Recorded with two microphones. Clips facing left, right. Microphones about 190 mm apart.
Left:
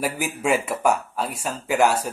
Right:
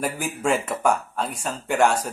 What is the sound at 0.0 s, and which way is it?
Speech, 5° left (ahead or behind).